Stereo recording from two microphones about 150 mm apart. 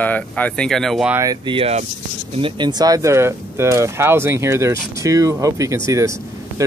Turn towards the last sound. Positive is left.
turn(degrees=-20)  # may be behind; listen again after turning